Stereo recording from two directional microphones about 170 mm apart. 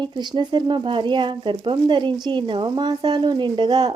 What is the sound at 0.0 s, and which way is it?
Speech, 25° right (ahead or behind).